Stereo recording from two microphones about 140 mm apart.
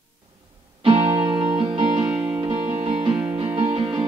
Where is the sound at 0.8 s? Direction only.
40° right (ahead or behind).